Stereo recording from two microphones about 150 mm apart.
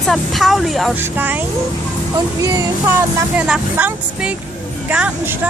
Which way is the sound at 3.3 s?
5° right (ahead or behind).